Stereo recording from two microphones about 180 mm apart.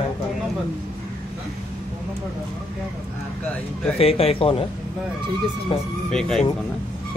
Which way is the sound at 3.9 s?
35° left (ahead or behind).